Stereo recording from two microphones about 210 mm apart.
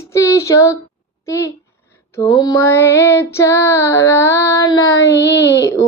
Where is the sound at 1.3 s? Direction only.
15° left (ahead or behind).